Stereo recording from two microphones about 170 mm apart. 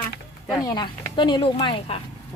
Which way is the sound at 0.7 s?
25° left (ahead or behind).